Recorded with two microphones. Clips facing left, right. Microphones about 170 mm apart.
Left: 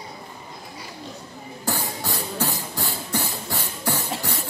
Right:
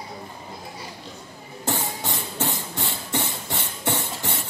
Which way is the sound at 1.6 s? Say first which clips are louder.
Even; 20° right (ahead or behind).